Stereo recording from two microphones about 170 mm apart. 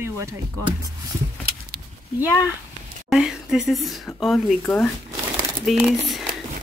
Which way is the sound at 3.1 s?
5° right (ahead or behind).